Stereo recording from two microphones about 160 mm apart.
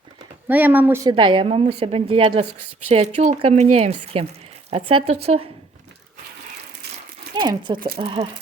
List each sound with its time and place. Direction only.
0.4 s speech: 10° right (ahead or behind)
1.0 s a woman's voice: 30° right (ahead or behind)
7.3 s a woman's voice: 30° right (ahead or behind)